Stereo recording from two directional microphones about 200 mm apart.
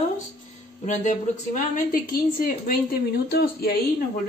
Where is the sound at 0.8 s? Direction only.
40° left (ahead or behind).